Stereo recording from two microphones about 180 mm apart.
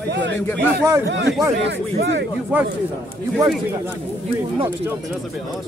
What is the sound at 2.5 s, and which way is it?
Speech, 10° right (ahead or behind).